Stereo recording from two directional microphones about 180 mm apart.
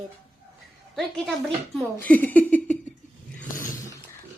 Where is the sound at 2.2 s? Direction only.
10° left (ahead or behind).